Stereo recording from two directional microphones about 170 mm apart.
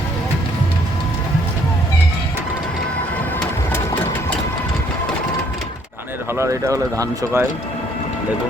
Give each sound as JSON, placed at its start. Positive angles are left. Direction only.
{"t": 6.3, "sound": "speech", "side_deg": -15}